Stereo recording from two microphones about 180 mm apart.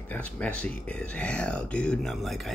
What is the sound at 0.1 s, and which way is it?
Speech, 10° left (ahead or behind).